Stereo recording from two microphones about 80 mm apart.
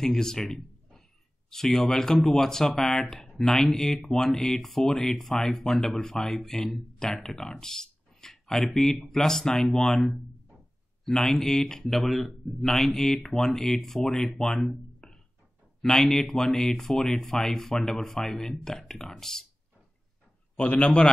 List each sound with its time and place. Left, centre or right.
0.0 s a man's voice: centre
14.4 s a sound: centre
15.8 s speech: centre
20.5 s a man's voice: centre